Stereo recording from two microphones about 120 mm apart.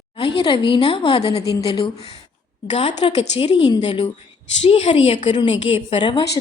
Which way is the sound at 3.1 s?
55° left (ahead or behind).